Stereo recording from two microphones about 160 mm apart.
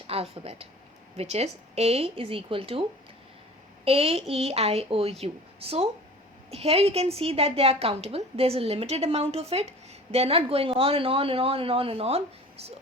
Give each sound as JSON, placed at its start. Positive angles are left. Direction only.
{"t": 0.1, "sound": "a woman's voice", "side_deg": -40}
{"t": 3.8, "sound": "a woman's voice", "side_deg": -40}